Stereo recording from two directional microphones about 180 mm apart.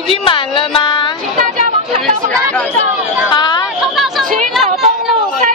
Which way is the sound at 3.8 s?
Centre (ahead or behind).